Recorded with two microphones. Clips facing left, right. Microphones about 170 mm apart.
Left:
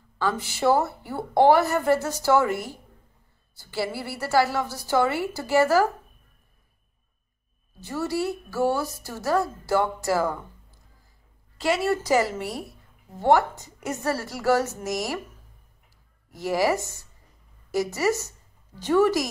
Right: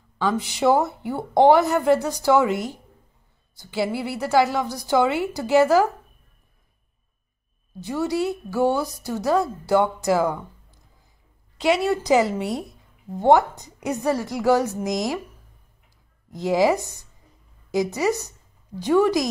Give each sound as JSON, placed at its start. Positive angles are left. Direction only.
{"t": 0.2, "sound": "a woman's voice", "side_deg": -15}
{"t": 7.8, "sound": "a woman's voice", "side_deg": -15}
{"t": 11.9, "sound": "a woman's voice", "side_deg": -20}
{"t": 16.3, "sound": "a woman's voice", "side_deg": -20}